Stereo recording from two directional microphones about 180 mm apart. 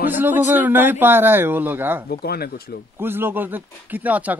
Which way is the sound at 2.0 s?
60° left (ahead or behind).